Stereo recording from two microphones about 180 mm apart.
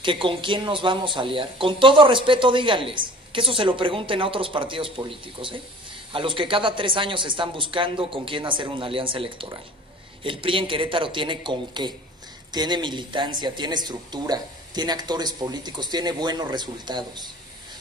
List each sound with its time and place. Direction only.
0.0 s speech: 30° right (ahead or behind)